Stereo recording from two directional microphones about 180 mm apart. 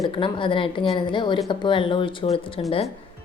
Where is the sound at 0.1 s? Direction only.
30° left (ahead or behind).